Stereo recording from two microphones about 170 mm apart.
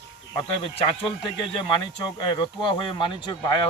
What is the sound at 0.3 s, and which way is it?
A man's voice, 30° left (ahead or behind).